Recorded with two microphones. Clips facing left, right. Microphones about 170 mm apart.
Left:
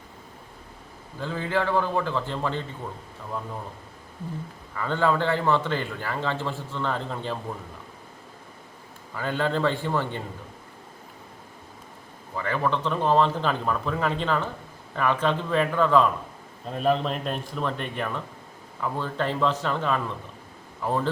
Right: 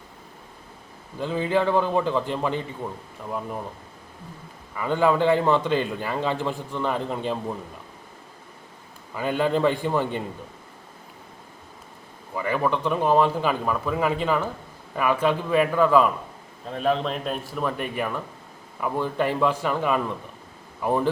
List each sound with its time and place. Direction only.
1.2 s a man's voice: 15° right (ahead or behind)
4.7 s a man's voice: 15° right (ahead or behind)
9.1 s a man's voice: 15° right (ahead or behind)
12.4 s a man's voice: 10° right (ahead or behind)